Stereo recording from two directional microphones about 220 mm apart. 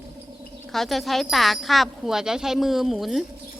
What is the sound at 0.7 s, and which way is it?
Speech, centre (ahead or behind).